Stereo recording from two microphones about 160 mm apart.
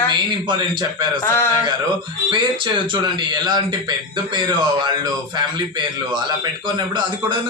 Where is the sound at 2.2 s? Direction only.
30° right (ahead or behind).